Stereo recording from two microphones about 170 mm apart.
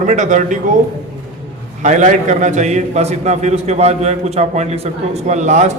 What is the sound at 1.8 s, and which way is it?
A man's voice, 45° right (ahead or behind).